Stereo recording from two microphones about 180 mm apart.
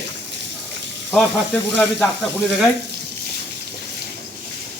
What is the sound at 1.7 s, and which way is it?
Speech, 5° left (ahead or behind).